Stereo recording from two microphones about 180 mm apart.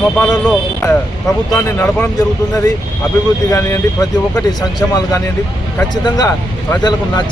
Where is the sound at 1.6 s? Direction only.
10° left (ahead or behind).